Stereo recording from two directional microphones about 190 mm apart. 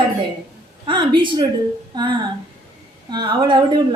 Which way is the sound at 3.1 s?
25° right (ahead or behind).